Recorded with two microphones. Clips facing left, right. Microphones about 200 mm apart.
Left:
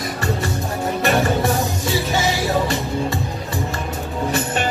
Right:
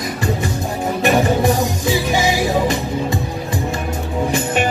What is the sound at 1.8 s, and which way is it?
Music, 15° right (ahead or behind).